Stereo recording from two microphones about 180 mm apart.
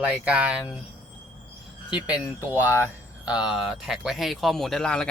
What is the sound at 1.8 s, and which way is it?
Speech, 5° right (ahead or behind).